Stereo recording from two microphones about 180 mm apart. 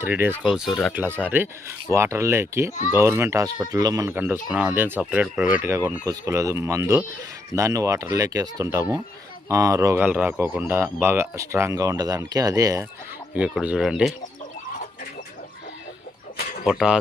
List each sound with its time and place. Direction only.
0.0 s speech: 10° right (ahead or behind)
13.3 s speech: 5° right (ahead or behind)
16.6 s speech: 5° right (ahead or behind)